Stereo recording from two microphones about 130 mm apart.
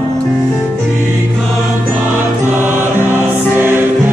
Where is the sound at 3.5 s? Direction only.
15° right (ahead or behind).